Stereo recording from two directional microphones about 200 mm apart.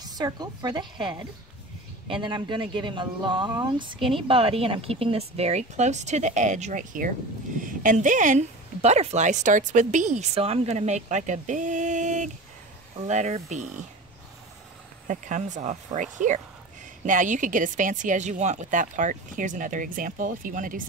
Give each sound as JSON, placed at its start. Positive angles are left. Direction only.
{"t": 0.0, "sound": "a woman's voice", "side_deg": -20}
{"t": 15.0, "sound": "speech", "side_deg": -40}